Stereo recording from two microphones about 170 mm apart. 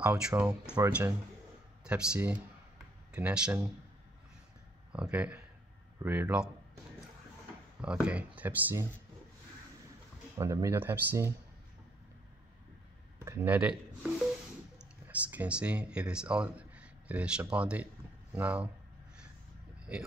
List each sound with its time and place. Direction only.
0.0 s speech: 5° right (ahead or behind)
4.9 s speech: 5° right (ahead or behind)
7.8 s speech: 5° right (ahead or behind)
10.3 s speech: 20° right (ahead or behind)
13.2 s speech: 15° right (ahead or behind)